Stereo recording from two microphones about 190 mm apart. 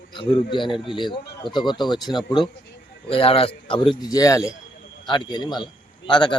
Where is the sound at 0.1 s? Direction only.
25° left (ahead or behind).